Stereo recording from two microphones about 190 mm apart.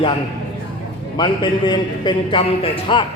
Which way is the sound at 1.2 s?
25° left (ahead or behind).